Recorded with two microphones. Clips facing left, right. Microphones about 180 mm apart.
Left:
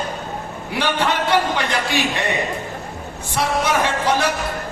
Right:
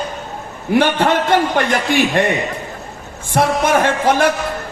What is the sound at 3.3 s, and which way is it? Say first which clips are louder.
Speech: right 5 dB; 50° right (ahead or behind).